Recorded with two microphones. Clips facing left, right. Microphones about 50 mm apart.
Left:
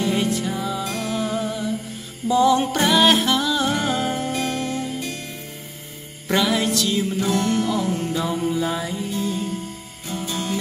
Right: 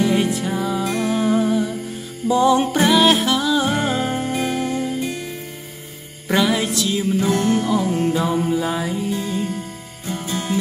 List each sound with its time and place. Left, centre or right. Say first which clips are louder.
0.0 s music: right 3 dB; centre
6.2 s music: right 2 dB; centre
7.3 s music: right 3 dB; right
8.3 s music: right 3 dB; centre
9.1 s music: right 2 dB; right